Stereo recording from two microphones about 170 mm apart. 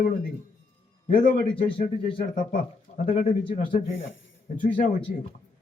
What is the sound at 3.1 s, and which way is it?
Speech, 35° left (ahead or behind).